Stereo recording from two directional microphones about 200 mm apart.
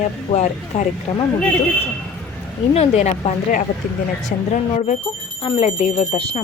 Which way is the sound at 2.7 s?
30° left (ahead or behind).